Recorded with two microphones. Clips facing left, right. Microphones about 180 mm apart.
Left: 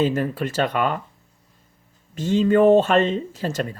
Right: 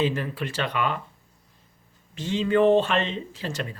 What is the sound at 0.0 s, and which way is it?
Speech, 45° left (ahead or behind).